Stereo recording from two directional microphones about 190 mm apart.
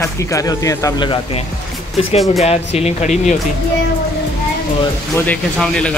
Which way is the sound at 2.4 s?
35° left (ahead or behind).